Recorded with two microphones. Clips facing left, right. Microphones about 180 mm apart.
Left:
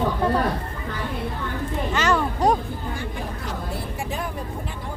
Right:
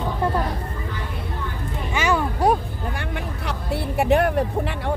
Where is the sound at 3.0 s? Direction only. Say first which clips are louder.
Right 1 dB; 70° right (ahead or behind).